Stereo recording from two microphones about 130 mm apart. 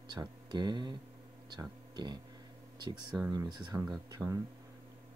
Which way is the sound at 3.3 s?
25° right (ahead or behind).